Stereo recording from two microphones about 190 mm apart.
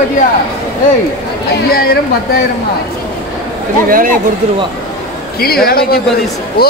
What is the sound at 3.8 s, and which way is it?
Speech, 45° right (ahead or behind).